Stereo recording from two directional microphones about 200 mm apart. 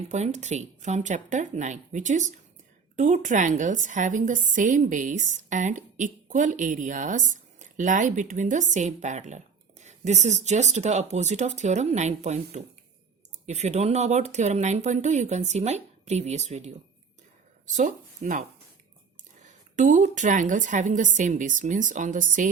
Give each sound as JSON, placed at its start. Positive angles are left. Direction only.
{"t": 0.1, "sound": "a woman's voice", "side_deg": -35}
{"t": 17.7, "sound": "a woman's voice", "side_deg": -40}